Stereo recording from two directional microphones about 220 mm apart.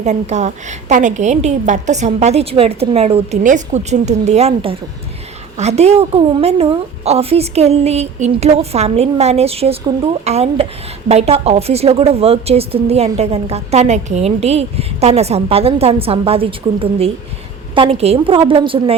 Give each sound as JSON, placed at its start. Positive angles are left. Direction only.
{"t": 0.0, "sound": "a woman's voice", "side_deg": -30}